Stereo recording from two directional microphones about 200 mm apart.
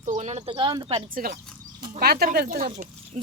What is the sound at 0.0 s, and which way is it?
Bird, 35° right (ahead or behind).